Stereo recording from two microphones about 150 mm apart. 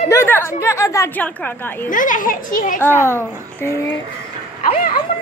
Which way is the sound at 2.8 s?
15° left (ahead or behind).